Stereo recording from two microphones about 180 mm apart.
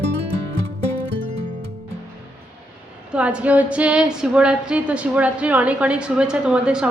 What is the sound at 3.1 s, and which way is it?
A woman's voice, 5° right (ahead or behind).